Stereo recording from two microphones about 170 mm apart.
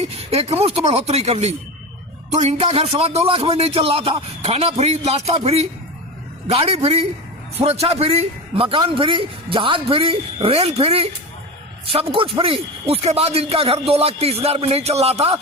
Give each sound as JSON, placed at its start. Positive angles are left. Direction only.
{"t": 0.0, "sound": "a man's voice", "side_deg": -35}